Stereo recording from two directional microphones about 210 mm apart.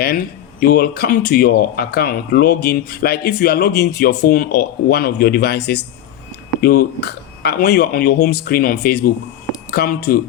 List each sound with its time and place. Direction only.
0.6 s speech: 45° left (ahead or behind)